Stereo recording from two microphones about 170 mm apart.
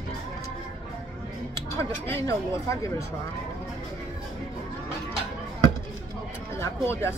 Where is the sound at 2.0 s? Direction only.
15° left (ahead or behind).